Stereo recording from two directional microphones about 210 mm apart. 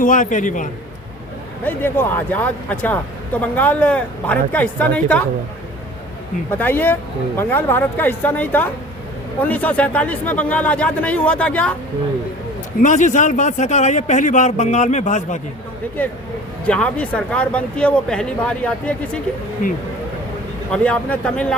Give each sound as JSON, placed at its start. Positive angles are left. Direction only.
{"t": 0.0, "sound": "speech", "side_deg": 40}
{"t": 1.6, "sound": "speech", "side_deg": 10}
{"t": 6.6, "sound": "speech", "side_deg": 10}
{"t": 12.8, "sound": "speech", "side_deg": 35}
{"t": 16.6, "sound": "speech", "side_deg": 5}
{"t": 19.6, "sound": "speech", "side_deg": 40}
{"t": 20.7, "sound": "speech", "side_deg": 5}